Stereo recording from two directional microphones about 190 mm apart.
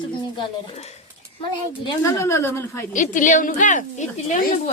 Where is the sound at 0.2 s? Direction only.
30° left (ahead or behind).